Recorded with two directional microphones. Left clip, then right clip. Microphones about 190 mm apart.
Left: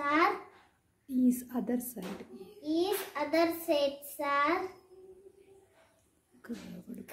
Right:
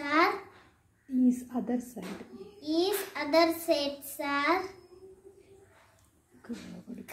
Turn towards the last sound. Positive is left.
turn(degrees=15)  # may be behind; listen again after turning